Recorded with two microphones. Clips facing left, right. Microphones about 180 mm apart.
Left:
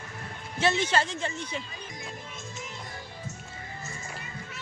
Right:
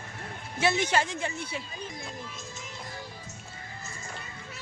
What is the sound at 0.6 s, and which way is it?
Speech, 10° right (ahead or behind).